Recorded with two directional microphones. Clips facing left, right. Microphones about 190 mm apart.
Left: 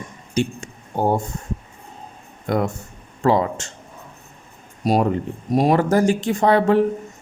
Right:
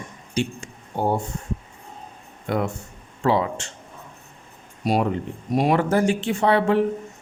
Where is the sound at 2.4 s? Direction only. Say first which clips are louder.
Left 3 dB; 40° left (ahead or behind).